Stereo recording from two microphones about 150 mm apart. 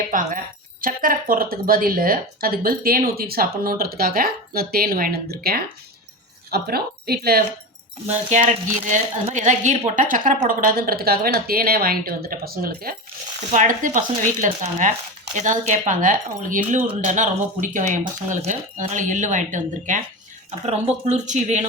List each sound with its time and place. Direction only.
0.1 s a woman's voice: 60° right (ahead or behind); by 7.4 s 90° right
8.0 s a woman's voice: 50° right (ahead or behind); by 13.0 s 85° right
13.5 s speech: 60° right (ahead or behind)
20.5 s speech: 45° right (ahead or behind)